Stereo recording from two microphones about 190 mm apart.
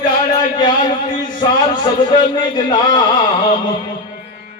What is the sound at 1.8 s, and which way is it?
Mantra, 25° left (ahead or behind).